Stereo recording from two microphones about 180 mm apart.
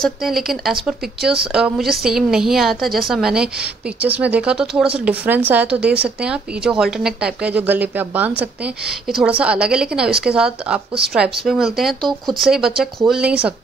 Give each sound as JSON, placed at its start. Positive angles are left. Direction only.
{"t": 0.0, "sound": "a woman's voice", "side_deg": 0}